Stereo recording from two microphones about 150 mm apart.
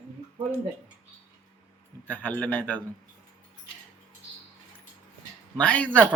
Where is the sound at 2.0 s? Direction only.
10° left (ahead or behind).